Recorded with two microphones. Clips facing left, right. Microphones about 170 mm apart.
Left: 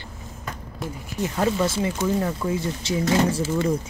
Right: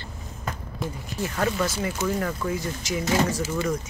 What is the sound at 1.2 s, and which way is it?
Speech, 20° left (ahead or behind).